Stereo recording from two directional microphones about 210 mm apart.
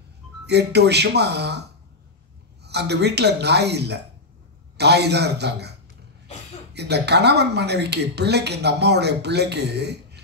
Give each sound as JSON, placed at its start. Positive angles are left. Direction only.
{"t": 0.5, "sound": "speech", "side_deg": -50}
{"t": 2.6, "sound": "speech", "side_deg": -50}
{"t": 6.7, "sound": "speech", "side_deg": -50}